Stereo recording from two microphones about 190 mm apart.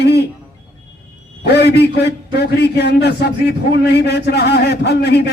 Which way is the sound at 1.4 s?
60° left (ahead or behind).